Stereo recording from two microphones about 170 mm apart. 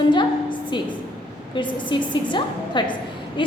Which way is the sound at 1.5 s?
30° left (ahead or behind).